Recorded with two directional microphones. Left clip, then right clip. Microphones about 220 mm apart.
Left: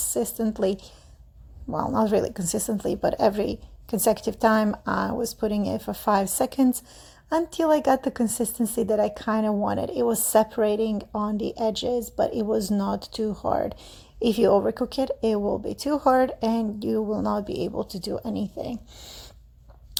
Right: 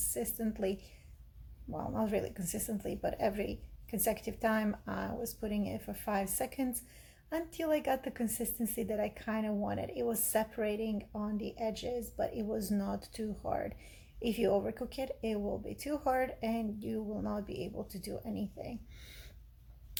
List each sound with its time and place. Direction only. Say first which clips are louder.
0.1 s speech: left 13 dB; 30° left (ahead or behind)